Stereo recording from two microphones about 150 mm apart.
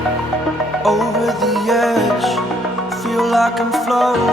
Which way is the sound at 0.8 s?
Centre (ahead or behind).